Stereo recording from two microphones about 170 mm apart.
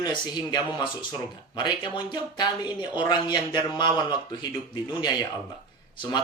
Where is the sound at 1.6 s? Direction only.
25° left (ahead or behind).